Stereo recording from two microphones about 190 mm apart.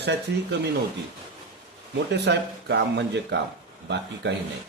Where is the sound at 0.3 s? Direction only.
65° right (ahead or behind).